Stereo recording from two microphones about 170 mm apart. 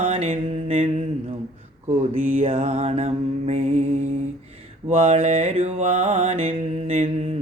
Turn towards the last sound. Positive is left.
turn(degrees=-35)  # may be behind; listen again after turning